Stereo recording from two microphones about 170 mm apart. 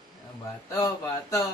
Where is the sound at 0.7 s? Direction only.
20° left (ahead or behind).